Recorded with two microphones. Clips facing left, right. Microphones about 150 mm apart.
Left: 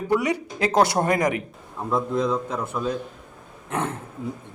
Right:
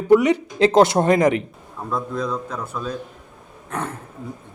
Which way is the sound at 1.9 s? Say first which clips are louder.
Left 2 dB; 20° left (ahead or behind).